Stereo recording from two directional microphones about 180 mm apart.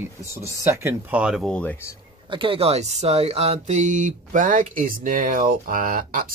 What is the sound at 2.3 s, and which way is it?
Speech, 30° right (ahead or behind).